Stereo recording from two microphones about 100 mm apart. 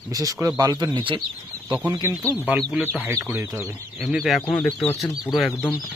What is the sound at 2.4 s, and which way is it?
Speech, 15° right (ahead or behind).